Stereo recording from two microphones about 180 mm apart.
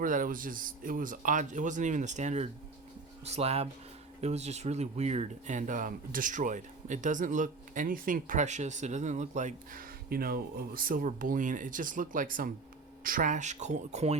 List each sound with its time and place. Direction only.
0.0 s speech: 50° right (ahead or behind)